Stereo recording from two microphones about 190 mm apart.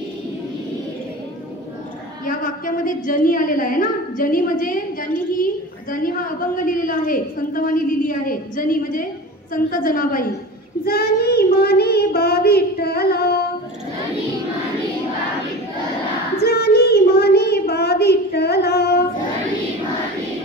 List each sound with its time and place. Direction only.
2.2 s a woman's voice: 45° left (ahead or behind)
10.9 s child singing: 55° left (ahead or behind)
16.3 s child singing: 55° left (ahead or behind)